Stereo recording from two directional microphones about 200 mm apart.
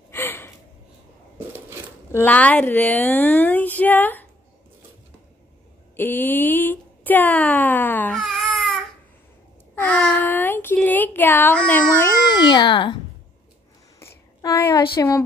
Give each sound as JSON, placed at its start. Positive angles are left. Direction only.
{"t": 0.1, "sound": "gasp", "side_deg": 10}
{"t": 2.1, "sound": "a woman's voice", "side_deg": 10}
{"t": 5.9, "sound": "speech", "side_deg": 10}
{"t": 9.8, "sound": "speech", "side_deg": 5}
{"t": 12.4, "sound": "a child's voice", "side_deg": 20}
{"t": 13.9, "sound": "a sound", "side_deg": 15}